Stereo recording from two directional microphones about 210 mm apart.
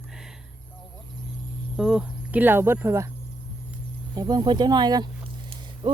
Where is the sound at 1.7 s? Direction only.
5° right (ahead or behind).